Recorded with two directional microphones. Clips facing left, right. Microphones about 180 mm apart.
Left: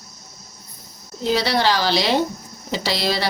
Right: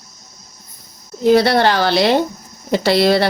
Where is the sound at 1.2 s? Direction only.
55° right (ahead or behind).